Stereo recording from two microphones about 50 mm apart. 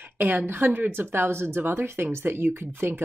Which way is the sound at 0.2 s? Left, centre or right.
Right.